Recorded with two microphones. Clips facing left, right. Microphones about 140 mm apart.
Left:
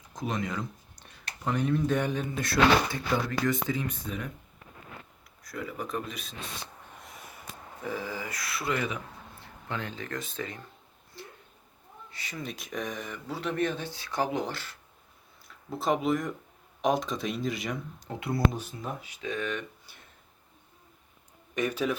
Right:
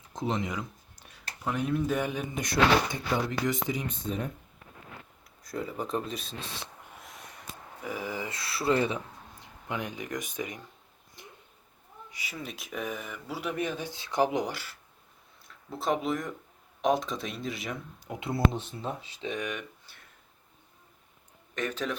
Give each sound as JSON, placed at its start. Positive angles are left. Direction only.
{"t": 0.1, "sound": "speech", "side_deg": -25}
{"t": 0.5, "sound": "speech", "side_deg": -5}
{"t": 2.3, "sound": "speech", "side_deg": -20}
{"t": 5.4, "sound": "speech", "side_deg": -25}
{"t": 7.0, "sound": "snort", "side_deg": 0}
{"t": 7.9, "sound": "speech", "side_deg": -15}
{"t": 9.4, "sound": "speech", "side_deg": -15}
{"t": 11.2, "sound": "a sound", "side_deg": -20}
{"t": 12.1, "sound": "speech", "side_deg": -10}
{"t": 15.4, "sound": "speech", "side_deg": 0}
{"t": 18.1, "sound": "speech", "side_deg": -25}
{"t": 19.9, "sound": "a sound", "side_deg": 15}
{"t": 21.5, "sound": "a man's voice", "side_deg": 10}